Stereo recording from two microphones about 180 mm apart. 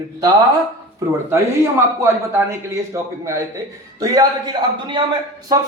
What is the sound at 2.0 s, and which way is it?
A man's voice, 15° right (ahead or behind).